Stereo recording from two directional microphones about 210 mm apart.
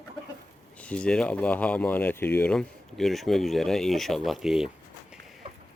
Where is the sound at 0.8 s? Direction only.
5° left (ahead or behind).